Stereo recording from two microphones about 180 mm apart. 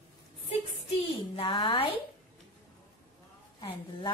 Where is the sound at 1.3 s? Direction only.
30° left (ahead or behind).